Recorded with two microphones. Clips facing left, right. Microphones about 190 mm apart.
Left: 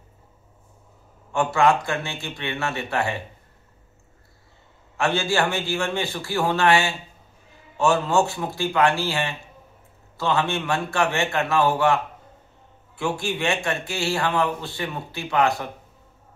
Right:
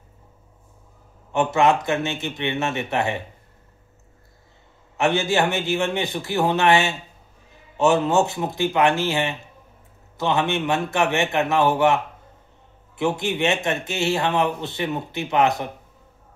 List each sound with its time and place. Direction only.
1.3 s a man's voice: 20° right (ahead or behind)
4.9 s a man's voice: 20° right (ahead or behind)